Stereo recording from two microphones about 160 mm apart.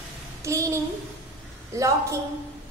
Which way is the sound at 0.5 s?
20° right (ahead or behind).